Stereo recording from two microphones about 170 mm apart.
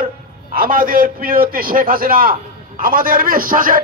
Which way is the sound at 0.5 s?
55° right (ahead or behind).